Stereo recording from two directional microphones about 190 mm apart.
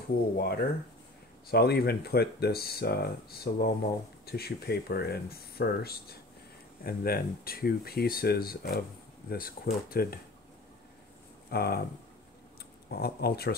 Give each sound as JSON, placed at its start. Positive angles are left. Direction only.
{"t": 0.4, "sound": "speech", "side_deg": 55}
{"t": 11.5, "sound": "speech", "side_deg": 55}
{"t": 12.9, "sound": "speech", "side_deg": 55}